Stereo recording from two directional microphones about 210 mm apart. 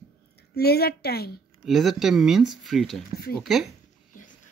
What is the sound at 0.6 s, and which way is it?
Speech, 50° left (ahead or behind).